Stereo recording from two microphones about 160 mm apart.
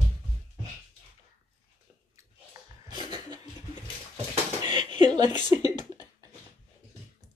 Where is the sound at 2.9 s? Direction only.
25° right (ahead or behind).